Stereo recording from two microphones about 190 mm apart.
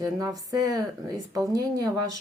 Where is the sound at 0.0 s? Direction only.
20° right (ahead or behind).